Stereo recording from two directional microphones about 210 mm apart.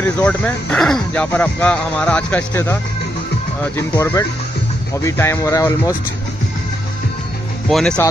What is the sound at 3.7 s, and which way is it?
Speech, 15° left (ahead or behind).